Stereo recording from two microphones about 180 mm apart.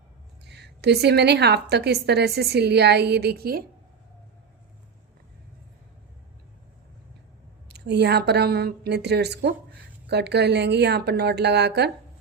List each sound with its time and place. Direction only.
0.4 s a woman's voice: 70° right (ahead or behind)
7.7 s a woman's voice: 70° right (ahead or behind)